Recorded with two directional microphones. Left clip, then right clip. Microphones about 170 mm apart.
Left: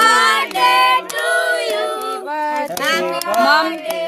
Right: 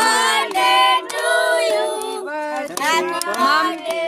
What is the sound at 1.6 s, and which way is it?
A capella, 45° left (ahead or behind).